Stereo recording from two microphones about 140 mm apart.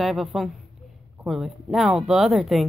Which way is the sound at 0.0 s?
Centre (ahead or behind).